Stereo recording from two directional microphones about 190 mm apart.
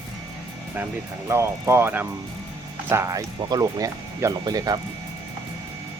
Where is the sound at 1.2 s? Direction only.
15° right (ahead or behind).